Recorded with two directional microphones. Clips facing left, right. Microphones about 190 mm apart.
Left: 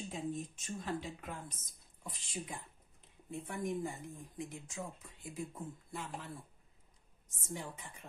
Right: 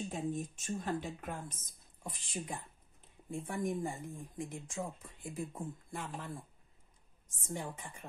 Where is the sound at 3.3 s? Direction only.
45° right (ahead or behind).